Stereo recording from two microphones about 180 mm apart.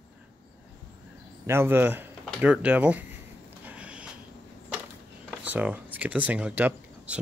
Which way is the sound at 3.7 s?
5° right (ahead or behind).